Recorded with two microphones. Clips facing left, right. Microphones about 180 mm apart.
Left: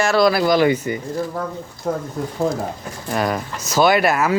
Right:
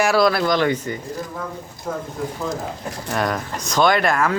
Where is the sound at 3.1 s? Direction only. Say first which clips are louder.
Left 2 dB; 5° left (ahead or behind).